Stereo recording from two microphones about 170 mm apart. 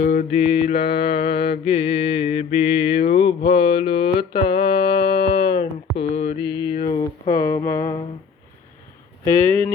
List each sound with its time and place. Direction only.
0.0 s mantra: 50° left (ahead or behind)
0.3 s mantra: 40° left (ahead or behind)
4.5 s a sound: 25° left (ahead or behind)
7.0 s speech: 20° left (ahead or behind)
9.3 s speech: 10° left (ahead or behind)